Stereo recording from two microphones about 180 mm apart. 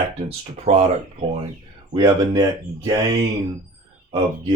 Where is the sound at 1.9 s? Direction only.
20° right (ahead or behind).